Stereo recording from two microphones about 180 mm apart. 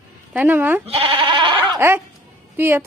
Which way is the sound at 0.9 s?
30° right (ahead or behind).